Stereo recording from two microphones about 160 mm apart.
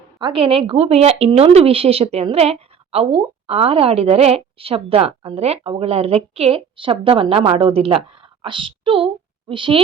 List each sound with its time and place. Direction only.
0.2 s speech: 35° right (ahead or behind)